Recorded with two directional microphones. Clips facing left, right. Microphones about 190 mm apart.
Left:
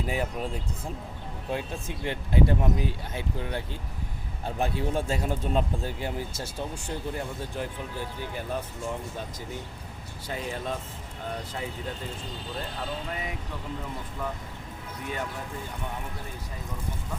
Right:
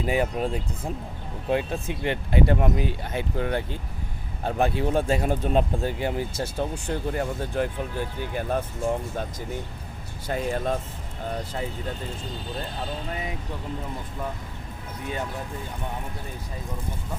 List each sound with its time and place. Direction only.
0.0 s speech: 75° right (ahead or behind); by 8.6 s 55° right (ahead or behind)
10.2 s speech: 50° right (ahead or behind)